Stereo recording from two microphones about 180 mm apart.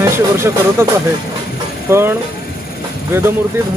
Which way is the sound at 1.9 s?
15° right (ahead or behind).